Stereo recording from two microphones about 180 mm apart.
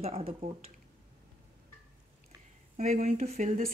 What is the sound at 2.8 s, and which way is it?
Speech, 45° right (ahead or behind).